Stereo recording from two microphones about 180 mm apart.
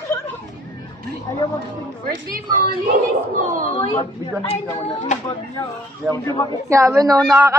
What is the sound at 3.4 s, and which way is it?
Speech, 50° right (ahead or behind).